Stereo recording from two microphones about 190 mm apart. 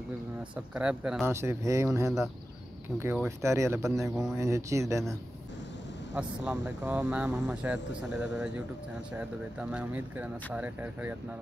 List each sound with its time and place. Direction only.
0.4 s speech: 5° right (ahead or behind)
3.0 s speech: 10° right (ahead or behind)
4.1 s speech: centre (ahead or behind)
4.4 s speech: 15° right (ahead or behind)
6.1 s speech: 10° right (ahead or behind)